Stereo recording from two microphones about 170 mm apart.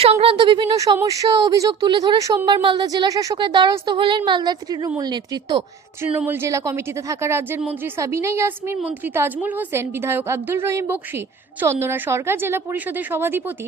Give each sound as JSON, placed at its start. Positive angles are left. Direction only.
{"t": 0.0, "sound": "speech", "side_deg": -35}
{"t": 0.9, "sound": "a woman's voice", "side_deg": -20}
{"t": 6.1, "sound": "a woman's voice", "side_deg": -15}